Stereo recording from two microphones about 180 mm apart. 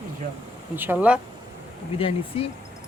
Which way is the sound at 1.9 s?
30° left (ahead or behind).